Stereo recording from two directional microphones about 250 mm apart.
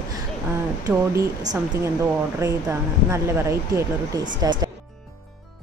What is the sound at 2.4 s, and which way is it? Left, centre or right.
A woman's voice, centre.